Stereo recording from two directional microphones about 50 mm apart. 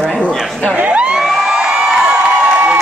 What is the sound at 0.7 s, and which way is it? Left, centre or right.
Speech, right.